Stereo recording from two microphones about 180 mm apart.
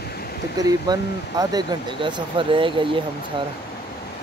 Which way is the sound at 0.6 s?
20° right (ahead or behind).